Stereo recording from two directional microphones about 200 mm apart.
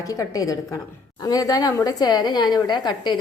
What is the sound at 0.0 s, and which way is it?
A woman's voice, 20° left (ahead or behind).